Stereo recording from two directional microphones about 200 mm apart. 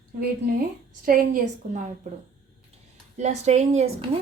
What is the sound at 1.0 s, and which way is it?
Speech, 45° right (ahead or behind).